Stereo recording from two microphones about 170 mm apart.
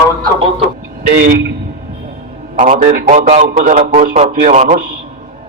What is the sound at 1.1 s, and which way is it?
Speech, 70° right (ahead or behind).